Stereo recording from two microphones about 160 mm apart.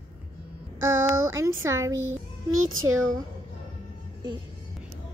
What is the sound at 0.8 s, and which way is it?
Speech, 15° right (ahead or behind).